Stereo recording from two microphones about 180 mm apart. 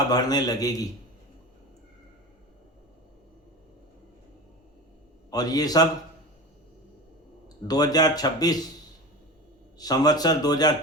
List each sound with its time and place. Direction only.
0.1 s speech: 20° left (ahead or behind)
5.3 s speech: 20° left (ahead or behind)
7.4 s speech: 20° left (ahead or behind)
9.7 s speech: 20° left (ahead or behind)